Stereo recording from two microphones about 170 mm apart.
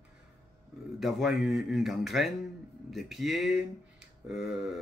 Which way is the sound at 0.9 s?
Centre (ahead or behind).